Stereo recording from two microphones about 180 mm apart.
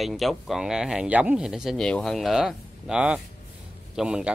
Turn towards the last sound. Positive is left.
turn(degrees=-5)  # may be behind; listen again after turning